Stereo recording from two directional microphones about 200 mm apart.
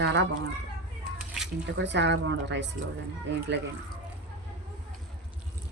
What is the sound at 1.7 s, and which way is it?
Speech, 60° right (ahead or behind).